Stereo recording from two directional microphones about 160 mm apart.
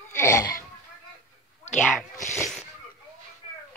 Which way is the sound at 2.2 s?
15° left (ahead or behind).